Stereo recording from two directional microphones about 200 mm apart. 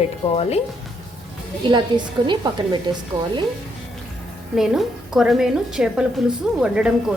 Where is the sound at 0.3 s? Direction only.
30° left (ahead or behind).